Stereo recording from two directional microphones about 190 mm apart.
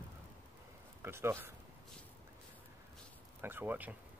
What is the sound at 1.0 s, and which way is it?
Speech, 15° right (ahead or behind).